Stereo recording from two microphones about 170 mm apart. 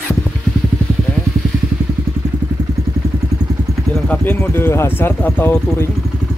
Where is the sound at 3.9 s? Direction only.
5° left (ahead or behind).